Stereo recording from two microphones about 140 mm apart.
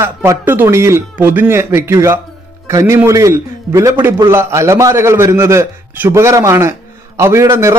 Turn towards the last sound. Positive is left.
turn(degrees=-20)  # may be behind; listen again after turning